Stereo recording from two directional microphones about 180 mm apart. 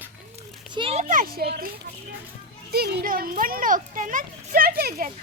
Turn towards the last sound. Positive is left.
turn(degrees=-60)  # may be behind; listen again after turning